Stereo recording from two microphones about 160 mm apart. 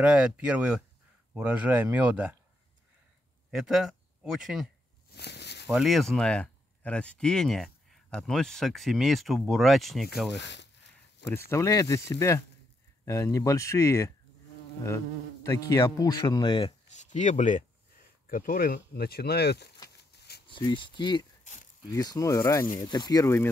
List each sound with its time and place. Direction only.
0.0 s speech: 5° right (ahead or behind)
3.5 s speech: 5° right (ahead or behind)
5.1 s a sound: 90° left
5.7 s speech: centre (ahead or behind)
10.3 s speech: 90° left
11.3 s speech: 15° left (ahead or behind)
15.4 s speech: 20° left (ahead or behind)
16.9 s speech: 50° left (ahead or behind)
18.2 s speech: 60° left (ahead or behind)
18.9 s speech: 80° left
20.2 s a sound: 90° left
20.4 s speech: 30° left (ahead or behind); by 23.5 s 15° left (ahead or behind)